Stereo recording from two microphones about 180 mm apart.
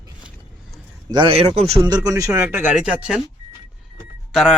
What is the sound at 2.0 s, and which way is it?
Speech, 20° right (ahead or behind).